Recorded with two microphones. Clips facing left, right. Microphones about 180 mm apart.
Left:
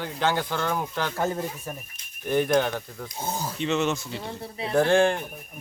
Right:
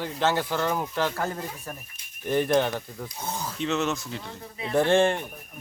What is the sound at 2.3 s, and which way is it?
Speech, centre (ahead or behind).